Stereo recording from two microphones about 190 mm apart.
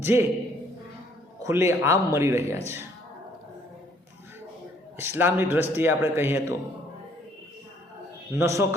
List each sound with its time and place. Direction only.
0.0 s a man's voice: 15° right (ahead or behind)
1.5 s a man's voice: 15° right (ahead or behind)
4.9 s a man's voice: 10° right (ahead or behind)
8.4 s a man's voice: 15° right (ahead or behind)